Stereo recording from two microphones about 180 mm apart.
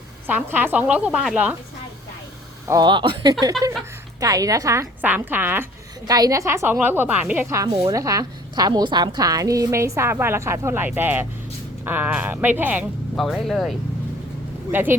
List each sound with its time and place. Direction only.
0.3 s a woman's voice: 10° right (ahead or behind)
2.6 s a woman's voice: 20° right (ahead or behind)
13.1 s speech: centre (ahead or behind)
14.7 s a woman's voice: 10° right (ahead or behind)